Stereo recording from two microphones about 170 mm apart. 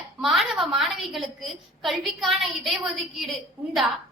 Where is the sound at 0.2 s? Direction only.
Centre (ahead or behind).